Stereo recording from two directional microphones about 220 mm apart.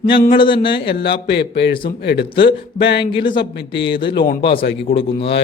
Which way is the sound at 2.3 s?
25° left (ahead or behind).